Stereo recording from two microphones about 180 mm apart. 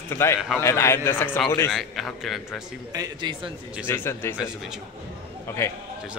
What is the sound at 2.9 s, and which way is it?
Speech, 25° right (ahead or behind).